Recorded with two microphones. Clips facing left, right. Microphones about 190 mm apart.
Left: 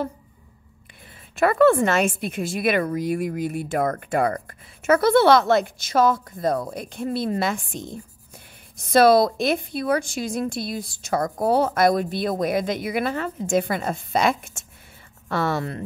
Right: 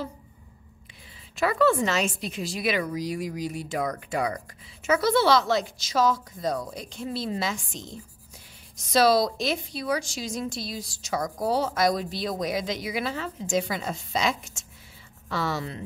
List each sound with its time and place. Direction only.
1.3 s a woman's voice: 55° left (ahead or behind)